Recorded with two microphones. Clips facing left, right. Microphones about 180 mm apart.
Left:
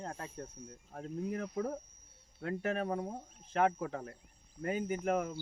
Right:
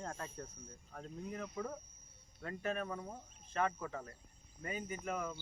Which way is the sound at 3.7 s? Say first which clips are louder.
Left 5 dB; 65° left (ahead or behind).